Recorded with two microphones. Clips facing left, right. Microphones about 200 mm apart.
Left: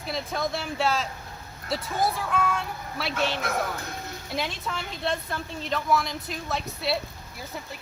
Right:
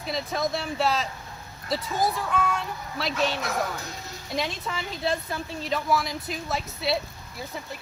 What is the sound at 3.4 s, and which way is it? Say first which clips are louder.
Speech: even; 55° left (ahead or behind).